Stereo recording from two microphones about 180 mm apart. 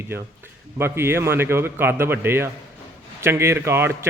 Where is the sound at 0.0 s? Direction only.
15° right (ahead or behind).